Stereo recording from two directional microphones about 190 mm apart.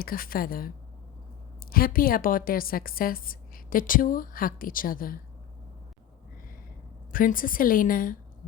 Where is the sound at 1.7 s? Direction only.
50° left (ahead or behind).